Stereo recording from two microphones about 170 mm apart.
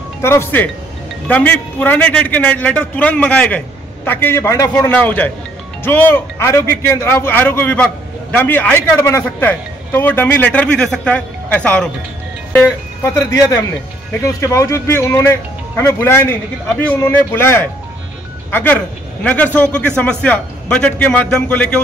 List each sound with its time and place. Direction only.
0.2 s a man's voice: 15° left (ahead or behind)